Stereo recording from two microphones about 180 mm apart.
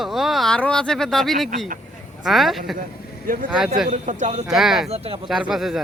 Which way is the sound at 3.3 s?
50° right (ahead or behind).